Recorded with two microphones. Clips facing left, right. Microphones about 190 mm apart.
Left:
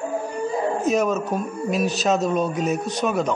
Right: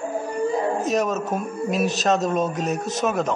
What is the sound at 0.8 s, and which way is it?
A man's voice, centre (ahead or behind).